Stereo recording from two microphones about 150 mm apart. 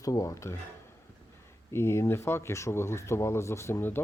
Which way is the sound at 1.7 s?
15° left (ahead or behind).